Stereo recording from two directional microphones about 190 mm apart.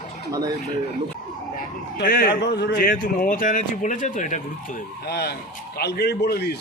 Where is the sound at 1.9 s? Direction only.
50° left (ahead or behind).